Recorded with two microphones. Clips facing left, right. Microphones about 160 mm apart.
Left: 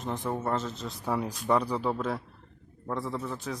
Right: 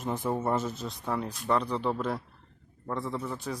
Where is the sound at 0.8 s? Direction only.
5° left (ahead or behind).